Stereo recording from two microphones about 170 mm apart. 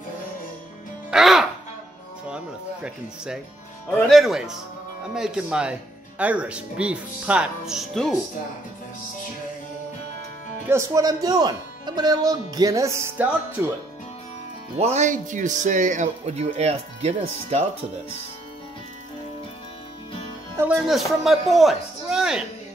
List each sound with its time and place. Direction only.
1.1 s music: centre (ahead or behind)
4.1 s speech: centre (ahead or behind)
10.7 s speech: 20° right (ahead or behind)
14.8 s speech: 40° right (ahead or behind)
20.5 s a man's voice: 5° right (ahead or behind)